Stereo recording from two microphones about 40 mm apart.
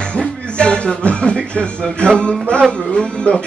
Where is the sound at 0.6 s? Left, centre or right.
Left.